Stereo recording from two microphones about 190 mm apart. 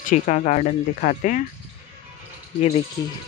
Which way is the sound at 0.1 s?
40° left (ahead or behind).